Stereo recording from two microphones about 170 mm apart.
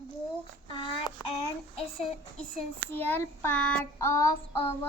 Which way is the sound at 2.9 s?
10° left (ahead or behind).